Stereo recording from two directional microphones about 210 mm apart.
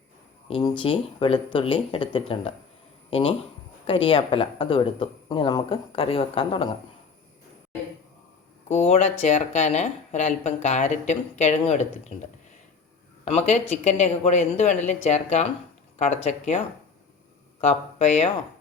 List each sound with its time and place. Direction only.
0.8 s speech: 25° left (ahead or behind)
8.7 s speech: 30° left (ahead or behind)
13.2 s speech: 30° left (ahead or behind)